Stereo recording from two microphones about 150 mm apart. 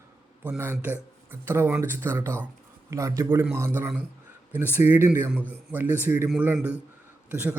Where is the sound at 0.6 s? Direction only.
10° right (ahead or behind).